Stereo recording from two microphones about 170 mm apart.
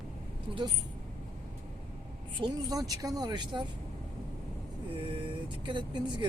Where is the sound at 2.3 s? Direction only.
20° right (ahead or behind).